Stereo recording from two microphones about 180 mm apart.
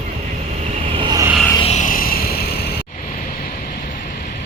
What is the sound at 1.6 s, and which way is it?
Vehicle, 40° left (ahead or behind).